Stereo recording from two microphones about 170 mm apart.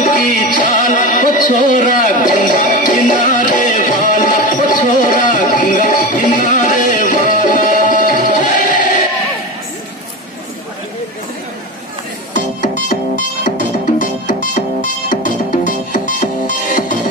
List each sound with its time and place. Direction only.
0.0 s music: 50° left (ahead or behind)
12.4 s music: 50° left (ahead or behind)